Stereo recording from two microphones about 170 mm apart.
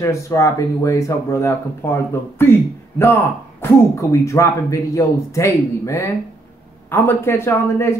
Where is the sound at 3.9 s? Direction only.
15° left (ahead or behind).